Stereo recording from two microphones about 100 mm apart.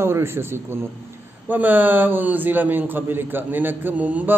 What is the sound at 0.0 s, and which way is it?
A man's voice, 25° right (ahead or behind).